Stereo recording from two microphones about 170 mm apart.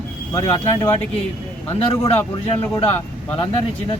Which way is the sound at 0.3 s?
35° left (ahead or behind).